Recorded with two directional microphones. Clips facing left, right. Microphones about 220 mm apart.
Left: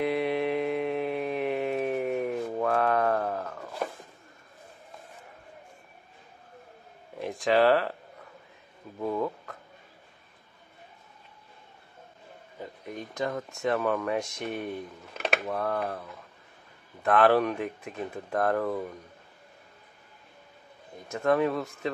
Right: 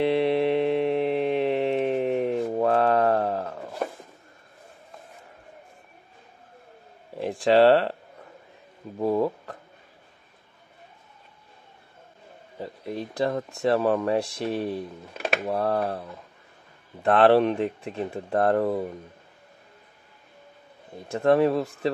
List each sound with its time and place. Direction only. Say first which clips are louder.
0.0 s mantra: right 5 dB; 30° right (ahead or behind)
7.2 s speech: right 5 dB; 30° right (ahead or behind)
8.9 s speech: right 6 dB; 35° right (ahead or behind)
12.5 s speech: right 6 dB; 35° right (ahead or behind)
15.1 s a sound: right 2 dB; centre (ahead or behind)
15.4 s speech: right 5 dB; 35° right (ahead or behind)
21.1 s speech: right 5 dB; 30° right (ahead or behind)